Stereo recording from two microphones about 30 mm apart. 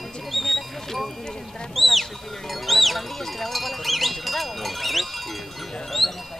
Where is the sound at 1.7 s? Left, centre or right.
Centre.